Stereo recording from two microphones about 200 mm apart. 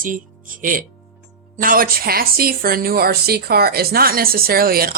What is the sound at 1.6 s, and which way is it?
Speech, 45° right (ahead or behind).